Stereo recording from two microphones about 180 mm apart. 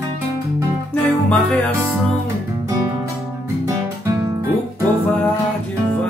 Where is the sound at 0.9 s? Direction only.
5° left (ahead or behind).